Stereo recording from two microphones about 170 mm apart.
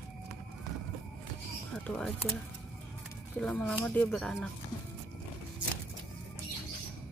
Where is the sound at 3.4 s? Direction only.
5° left (ahead or behind).